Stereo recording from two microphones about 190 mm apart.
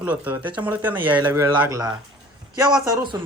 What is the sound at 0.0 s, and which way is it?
Speech, 10° right (ahead or behind).